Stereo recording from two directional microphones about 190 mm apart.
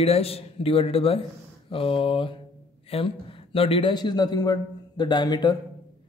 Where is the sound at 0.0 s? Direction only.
30° left (ahead or behind).